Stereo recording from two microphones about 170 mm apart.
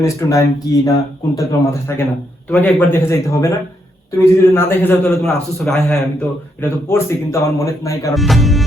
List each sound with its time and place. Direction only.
0.0 s speech: 20° left (ahead or behind)
8.1 s music: centre (ahead or behind)